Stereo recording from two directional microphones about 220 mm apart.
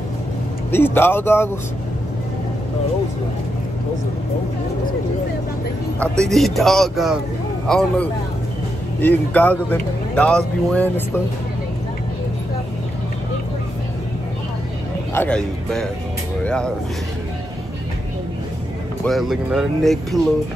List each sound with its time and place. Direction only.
0.7 s speech: 10° left (ahead or behind)
5.9 s speech: centre (ahead or behind)
15.1 s speech: 5° left (ahead or behind)
19.0 s speech: centre (ahead or behind)